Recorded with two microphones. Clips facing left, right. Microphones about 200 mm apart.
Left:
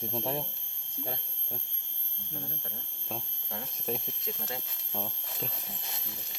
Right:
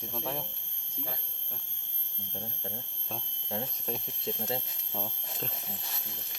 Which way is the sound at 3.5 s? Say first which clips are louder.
Right 6 dB; 25° right (ahead or behind).